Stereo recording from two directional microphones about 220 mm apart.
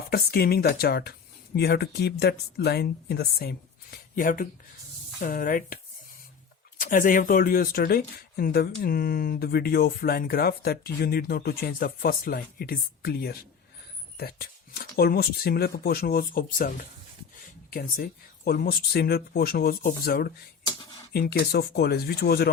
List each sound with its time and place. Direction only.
0.1 s speech: 45° left (ahead or behind)